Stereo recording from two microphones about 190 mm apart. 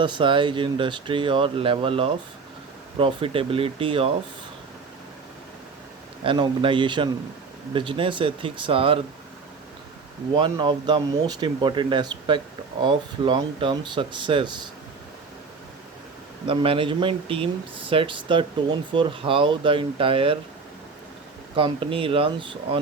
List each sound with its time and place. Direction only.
0.0 s speech: 25° right (ahead or behind)
6.2 s speech: 25° right (ahead or behind)
10.3 s speech: 25° right (ahead or behind)
16.5 s speech: 25° right (ahead or behind)
21.5 s speech: 25° right (ahead or behind)